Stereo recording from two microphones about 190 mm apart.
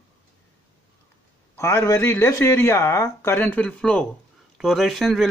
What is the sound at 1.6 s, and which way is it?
Speech, 15° left (ahead or behind).